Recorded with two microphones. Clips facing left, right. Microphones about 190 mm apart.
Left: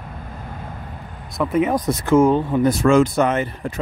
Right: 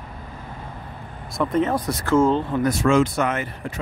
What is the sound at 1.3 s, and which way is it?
Speech, 10° left (ahead or behind).